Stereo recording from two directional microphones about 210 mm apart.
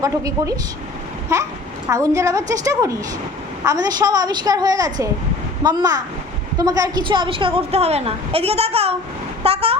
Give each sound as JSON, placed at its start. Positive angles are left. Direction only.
{"t": 0.0, "sound": "a woman's voice", "side_deg": -15}
{"t": 9.4, "sound": "vehicle", "side_deg": -30}